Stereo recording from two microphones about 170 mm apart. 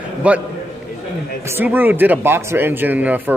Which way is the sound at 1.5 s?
10° right (ahead or behind).